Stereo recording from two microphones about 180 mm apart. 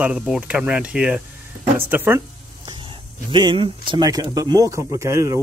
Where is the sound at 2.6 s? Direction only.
25° right (ahead or behind).